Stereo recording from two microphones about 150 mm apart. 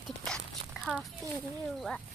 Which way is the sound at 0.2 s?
Centre (ahead or behind).